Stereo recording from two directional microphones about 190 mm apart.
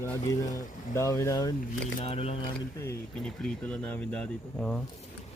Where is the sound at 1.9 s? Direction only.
30° left (ahead or behind).